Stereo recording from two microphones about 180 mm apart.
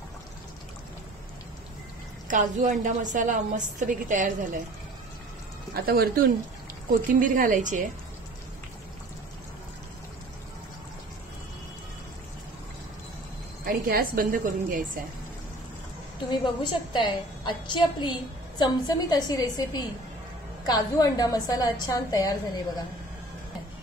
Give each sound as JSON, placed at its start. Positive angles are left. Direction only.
{"t": 2.2, "sound": "a woman's voice", "side_deg": -45}
{"t": 5.9, "sound": "a woman's voice", "side_deg": -55}
{"t": 13.7, "sound": "a woman's voice", "side_deg": -55}
{"t": 16.3, "sound": "a woman's voice", "side_deg": 25}